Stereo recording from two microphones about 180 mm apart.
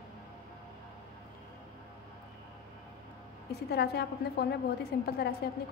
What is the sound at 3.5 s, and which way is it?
A woman's voice, 65° left (ahead or behind).